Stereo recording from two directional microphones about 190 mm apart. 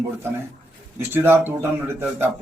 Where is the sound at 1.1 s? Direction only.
10° right (ahead or behind).